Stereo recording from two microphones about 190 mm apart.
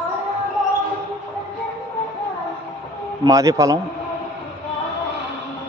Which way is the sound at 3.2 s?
20° right (ahead or behind).